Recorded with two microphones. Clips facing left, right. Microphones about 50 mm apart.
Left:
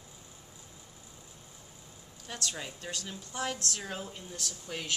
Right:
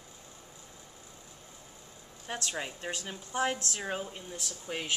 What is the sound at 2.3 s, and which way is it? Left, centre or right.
A woman's voice, right.